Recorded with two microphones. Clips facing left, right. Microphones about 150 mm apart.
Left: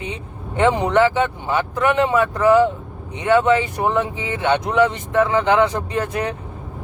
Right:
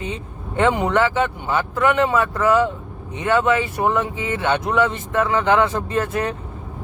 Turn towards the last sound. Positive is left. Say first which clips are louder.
# right 1 dB
turn(degrees=20)  # may be behind; listen again after turning